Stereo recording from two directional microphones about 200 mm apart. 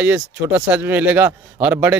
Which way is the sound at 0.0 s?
10° right (ahead or behind).